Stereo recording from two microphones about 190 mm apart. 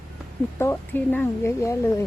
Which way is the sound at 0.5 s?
15° left (ahead or behind).